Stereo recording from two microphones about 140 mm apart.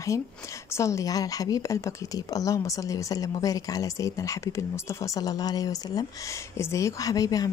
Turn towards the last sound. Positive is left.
turn(degrees=25)  # may be behind; listen again after turning